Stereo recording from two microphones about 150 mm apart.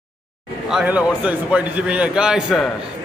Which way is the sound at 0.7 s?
5° right (ahead or behind).